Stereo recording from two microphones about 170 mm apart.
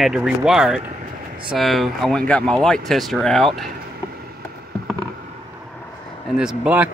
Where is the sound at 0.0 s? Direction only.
Centre (ahead or behind).